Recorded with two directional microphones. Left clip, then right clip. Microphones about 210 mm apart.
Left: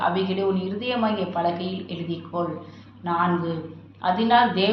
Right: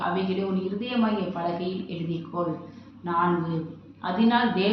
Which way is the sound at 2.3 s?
40° left (ahead or behind).